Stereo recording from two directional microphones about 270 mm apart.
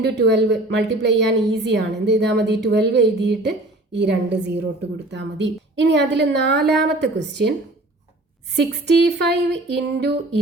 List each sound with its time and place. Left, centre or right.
0.0 s a woman's voice: right
8.5 s a woman's voice: right